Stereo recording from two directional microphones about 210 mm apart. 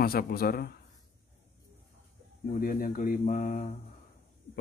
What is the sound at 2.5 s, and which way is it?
Speech, 45° left (ahead or behind).